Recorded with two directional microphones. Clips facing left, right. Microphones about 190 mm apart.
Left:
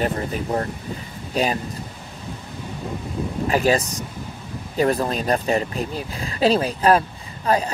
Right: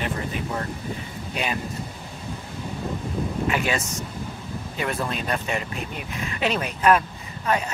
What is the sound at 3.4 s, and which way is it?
Speech, 35° left (ahead or behind).